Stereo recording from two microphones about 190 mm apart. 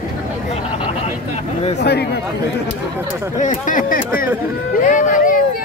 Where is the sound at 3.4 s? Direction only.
40° left (ahead or behind).